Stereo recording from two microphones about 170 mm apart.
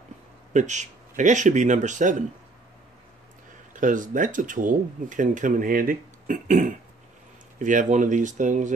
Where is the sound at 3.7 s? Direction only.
50° right (ahead or behind).